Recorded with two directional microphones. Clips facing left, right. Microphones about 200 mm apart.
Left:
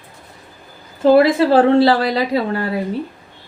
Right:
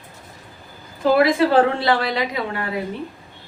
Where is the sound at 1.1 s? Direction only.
30° left (ahead or behind).